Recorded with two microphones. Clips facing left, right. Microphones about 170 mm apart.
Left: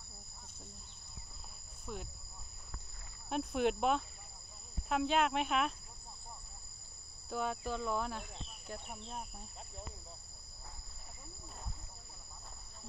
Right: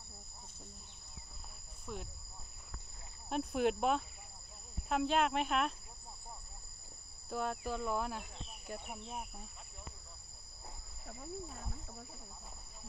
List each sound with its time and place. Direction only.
1.9 s speech: centre (ahead or behind)
3.3 s speech: centre (ahead or behind)
7.2 s speech: centre (ahead or behind)